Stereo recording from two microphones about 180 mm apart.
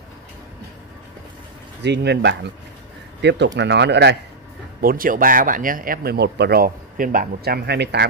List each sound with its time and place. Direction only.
1.8 s speech: 70° right (ahead or behind)
4.8 s speech: 50° right (ahead or behind); by 8.1 s 65° right (ahead or behind)